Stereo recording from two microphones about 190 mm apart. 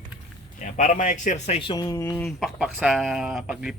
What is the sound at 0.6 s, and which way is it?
Speech, 40° left (ahead or behind).